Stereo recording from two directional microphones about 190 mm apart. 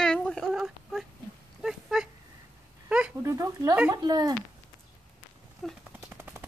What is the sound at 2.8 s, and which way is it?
Speech, 5° right (ahead or behind).